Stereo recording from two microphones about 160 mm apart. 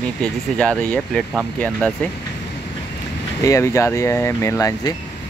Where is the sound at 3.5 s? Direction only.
20° left (ahead or behind).